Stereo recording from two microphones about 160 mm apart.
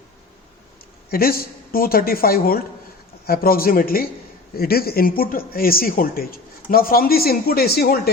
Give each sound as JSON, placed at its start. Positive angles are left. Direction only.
{"t": 1.1, "sound": "speech", "side_deg": 70}